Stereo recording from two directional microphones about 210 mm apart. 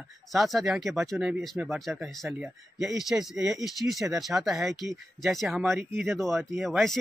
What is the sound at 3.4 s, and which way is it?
Speech, 15° right (ahead or behind).